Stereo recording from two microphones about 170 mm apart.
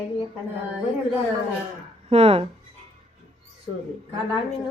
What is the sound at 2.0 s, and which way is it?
Speech, 35° right (ahead or behind).